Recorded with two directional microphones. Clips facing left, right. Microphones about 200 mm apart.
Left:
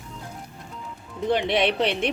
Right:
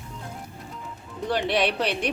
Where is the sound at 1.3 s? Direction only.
20° left (ahead or behind).